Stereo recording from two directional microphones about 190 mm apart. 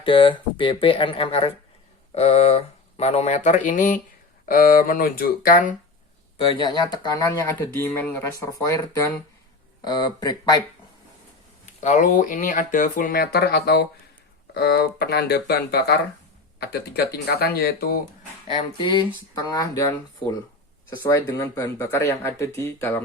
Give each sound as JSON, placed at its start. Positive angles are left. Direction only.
{"t": 0.0, "sound": "speech", "side_deg": 25}
{"t": 6.3, "sound": "speech", "side_deg": 20}
{"t": 11.6, "sound": "speech", "side_deg": 40}
{"t": 18.4, "sound": "speech", "side_deg": 25}